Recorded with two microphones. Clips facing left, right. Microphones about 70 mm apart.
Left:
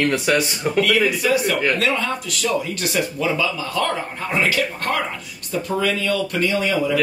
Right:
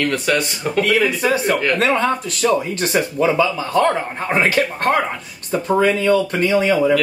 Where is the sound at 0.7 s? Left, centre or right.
Right.